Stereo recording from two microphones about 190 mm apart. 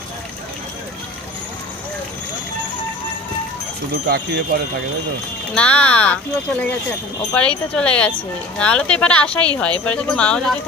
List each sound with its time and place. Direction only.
4.1 s speech: 55° right (ahead or behind)
5.5 s speech: 5° left (ahead or behind)
7.3 s speech: 5° left (ahead or behind)